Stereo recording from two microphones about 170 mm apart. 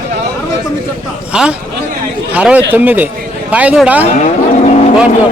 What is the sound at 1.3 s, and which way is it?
A man's voice, 5° right (ahead or behind).